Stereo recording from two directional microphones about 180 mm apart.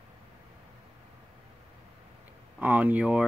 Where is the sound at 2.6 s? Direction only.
10° right (ahead or behind).